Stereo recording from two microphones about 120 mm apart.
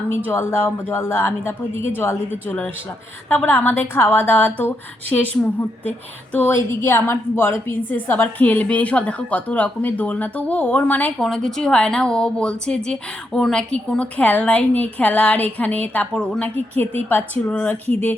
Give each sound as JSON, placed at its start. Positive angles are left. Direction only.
{"t": 0.3, "sound": "a woman's voice", "side_deg": 20}
{"t": 11.2, "sound": "a woman's voice", "side_deg": 5}